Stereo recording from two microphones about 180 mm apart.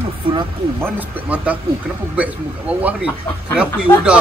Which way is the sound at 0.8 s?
10° right (ahead or behind).